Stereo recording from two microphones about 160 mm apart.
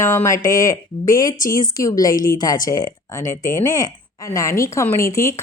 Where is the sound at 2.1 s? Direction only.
60° left (ahead or behind).